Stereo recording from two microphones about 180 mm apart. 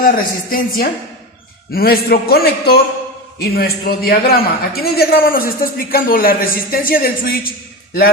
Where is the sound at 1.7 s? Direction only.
60° left (ahead or behind).